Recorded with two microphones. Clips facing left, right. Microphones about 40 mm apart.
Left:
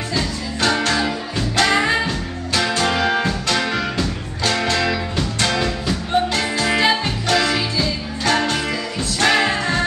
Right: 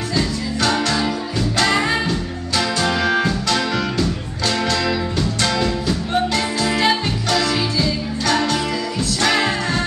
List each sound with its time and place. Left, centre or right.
0.6 s music: centre
3.9 s music: centre
7.5 s music: centre
8.3 s music: left
9.2 s music: centre